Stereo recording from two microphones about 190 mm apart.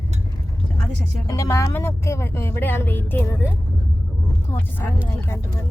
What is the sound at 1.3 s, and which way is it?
Speech, 15° left (ahead or behind).